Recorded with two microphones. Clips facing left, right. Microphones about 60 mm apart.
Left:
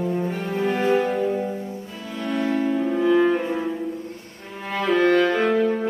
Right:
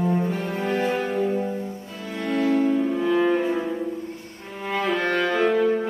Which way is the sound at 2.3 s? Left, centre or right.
Centre.